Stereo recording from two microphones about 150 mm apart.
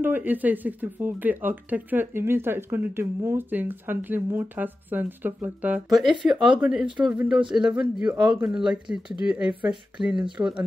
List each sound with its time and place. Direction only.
0.0 s speech: 10° right (ahead or behind)
5.9 s speech: centre (ahead or behind)
10.1 s speech: 30° right (ahead or behind)